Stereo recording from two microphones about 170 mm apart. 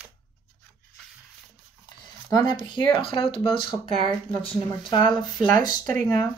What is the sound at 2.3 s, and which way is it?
Speech, 30° left (ahead or behind).